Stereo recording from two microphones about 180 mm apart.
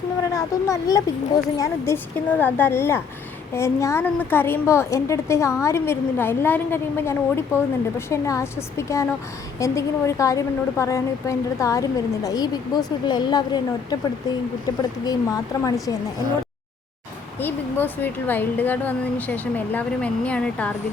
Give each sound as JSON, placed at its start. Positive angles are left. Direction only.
{"t": 0.3, "sound": "a woman's voice", "side_deg": 20}
{"t": 17.4, "sound": "a woman's voice", "side_deg": 10}